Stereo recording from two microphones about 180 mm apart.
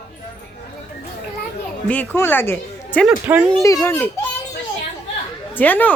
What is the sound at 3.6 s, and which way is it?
Speech, 15° left (ahead or behind).